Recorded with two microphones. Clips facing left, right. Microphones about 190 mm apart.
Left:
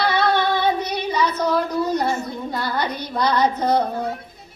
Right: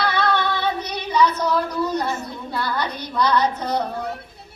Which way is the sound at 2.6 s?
55° left (ahead or behind).